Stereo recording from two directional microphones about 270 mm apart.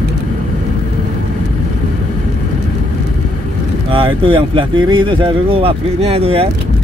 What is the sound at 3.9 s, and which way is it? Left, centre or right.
Speech, centre.